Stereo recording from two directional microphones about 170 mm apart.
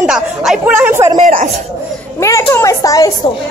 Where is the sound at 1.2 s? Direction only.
50° right (ahead or behind).